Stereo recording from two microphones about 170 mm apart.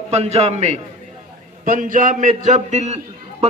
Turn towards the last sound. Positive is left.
turn(degrees=-40)  # may be behind; listen again after turning